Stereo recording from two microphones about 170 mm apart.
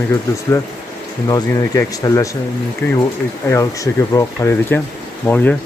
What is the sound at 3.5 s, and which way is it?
Speech, 20° left (ahead or behind).